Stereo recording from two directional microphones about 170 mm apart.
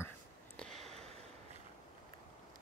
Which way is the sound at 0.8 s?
40° right (ahead or behind).